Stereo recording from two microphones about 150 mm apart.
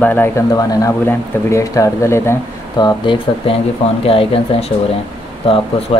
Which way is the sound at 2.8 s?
30° left (ahead or behind).